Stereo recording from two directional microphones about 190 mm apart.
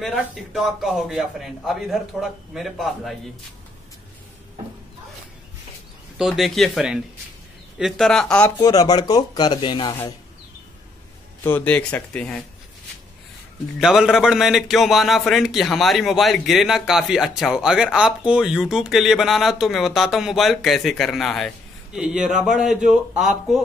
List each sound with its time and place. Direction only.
0.0 s a man's voice: centre (ahead or behind)
6.1 s a man's voice: centre (ahead or behind)
8.5 s chopping: 20° left (ahead or behind)
11.4 s speech: 10° left (ahead or behind)
13.7 s a man's voice: 5° right (ahead or behind)